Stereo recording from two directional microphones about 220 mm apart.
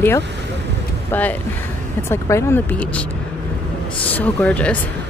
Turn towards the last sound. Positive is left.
turn(degrees=5)  # may be behind; listen again after turning